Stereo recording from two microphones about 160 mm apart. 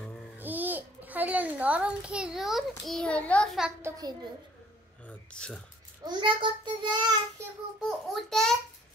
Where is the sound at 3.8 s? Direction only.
25° right (ahead or behind).